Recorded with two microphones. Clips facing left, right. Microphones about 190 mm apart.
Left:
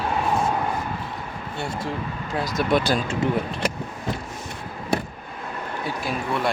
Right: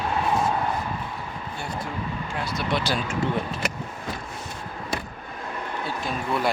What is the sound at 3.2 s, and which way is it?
Speech, 20° left (ahead or behind).